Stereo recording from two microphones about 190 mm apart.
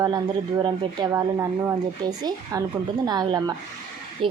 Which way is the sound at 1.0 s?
25° right (ahead or behind).